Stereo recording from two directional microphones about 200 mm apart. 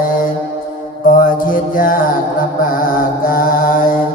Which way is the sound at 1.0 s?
45° left (ahead or behind).